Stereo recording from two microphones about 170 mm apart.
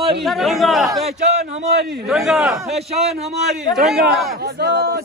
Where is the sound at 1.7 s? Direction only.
70° right (ahead or behind).